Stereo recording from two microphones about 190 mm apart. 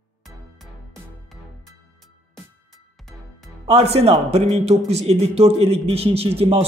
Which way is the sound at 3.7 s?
35° right (ahead or behind).